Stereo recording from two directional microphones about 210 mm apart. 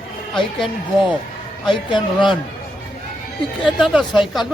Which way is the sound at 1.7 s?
20° left (ahead or behind).